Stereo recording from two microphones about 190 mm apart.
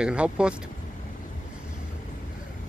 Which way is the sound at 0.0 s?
5° right (ahead or behind).